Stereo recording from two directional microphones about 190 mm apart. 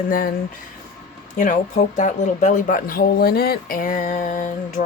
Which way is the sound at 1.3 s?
45° left (ahead or behind).